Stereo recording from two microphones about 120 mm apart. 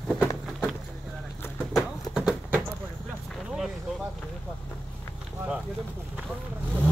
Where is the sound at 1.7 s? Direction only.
5° right (ahead or behind).